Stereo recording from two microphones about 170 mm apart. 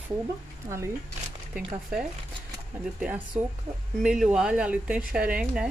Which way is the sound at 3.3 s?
10° right (ahead or behind).